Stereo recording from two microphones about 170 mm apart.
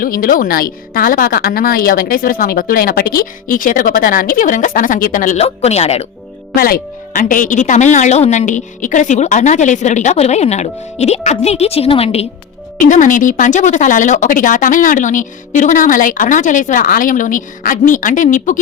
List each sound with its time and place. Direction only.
0.0 s a woman's voice: 55° left (ahead or behind); by 6.1 s 40° left (ahead or behind)
6.6 s speech: 60° left (ahead or behind); by 12.3 s 35° left (ahead or behind)
12.8 s speech: 50° left (ahead or behind)